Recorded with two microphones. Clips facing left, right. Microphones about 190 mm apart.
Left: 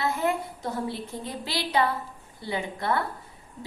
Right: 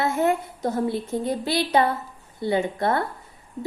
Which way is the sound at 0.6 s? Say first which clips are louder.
Right 8 dB; 45° right (ahead or behind).